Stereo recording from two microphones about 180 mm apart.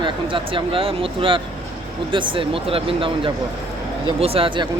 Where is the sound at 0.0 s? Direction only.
30° right (ahead or behind).